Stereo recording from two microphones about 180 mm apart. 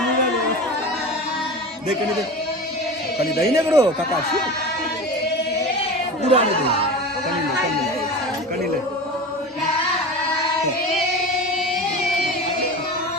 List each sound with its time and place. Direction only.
3.5 s speech: 15° right (ahead or behind)
6.2 s speech: 35° right (ahead or behind)